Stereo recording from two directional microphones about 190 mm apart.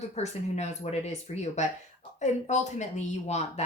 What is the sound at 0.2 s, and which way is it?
A woman's voice, 35° left (ahead or behind).